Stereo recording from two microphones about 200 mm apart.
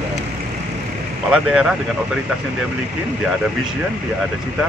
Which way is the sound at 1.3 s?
Centre (ahead or behind).